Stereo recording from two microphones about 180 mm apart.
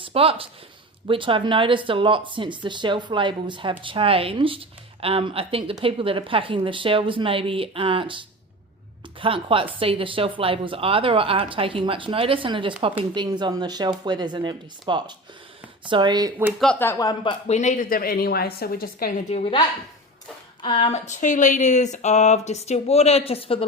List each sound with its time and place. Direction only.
0.0 s speech: 30° right (ahead or behind)
9.2 s speech: 30° right (ahead or behind)
16.6 s speech: 10° left (ahead or behind)
17.5 s a woman's voice: 40° left (ahead or behind)
19.3 s speech: 35° left (ahead or behind)
20.6 s speech: 30° left (ahead or behind)